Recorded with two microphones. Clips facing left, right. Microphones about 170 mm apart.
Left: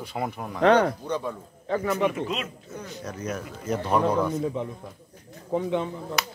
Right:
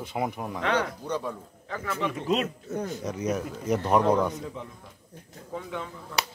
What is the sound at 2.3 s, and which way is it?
Speech, 45° right (ahead or behind).